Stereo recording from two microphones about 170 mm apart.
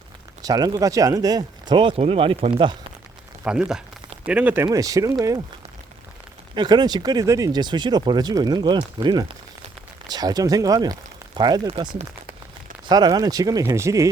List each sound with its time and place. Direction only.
0.4 s speech: 20° right (ahead or behind)
3.4 s speech: 5° right (ahead or behind); by 5.1 s 20° right (ahead or behind)
6.6 s speech: 25° right (ahead or behind)